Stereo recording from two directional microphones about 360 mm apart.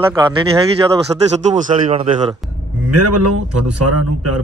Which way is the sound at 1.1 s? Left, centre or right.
Centre.